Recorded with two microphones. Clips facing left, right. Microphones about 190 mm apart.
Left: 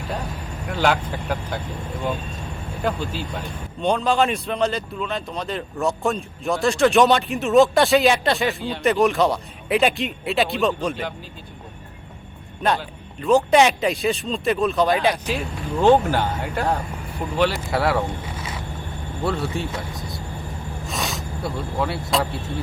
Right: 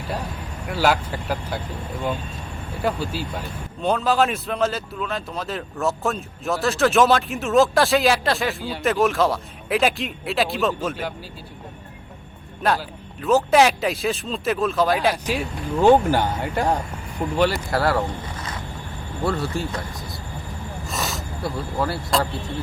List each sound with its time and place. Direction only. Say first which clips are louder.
0.7 s speech: even; 5° right (ahead or behind)
2.8 s speech: right 1 dB; 10° right (ahead or behind)
12.6 s speech: even; centre (ahead or behind)
17.7 s speech: even; centre (ahead or behind)
19.2 s speech: even; centre (ahead or behind)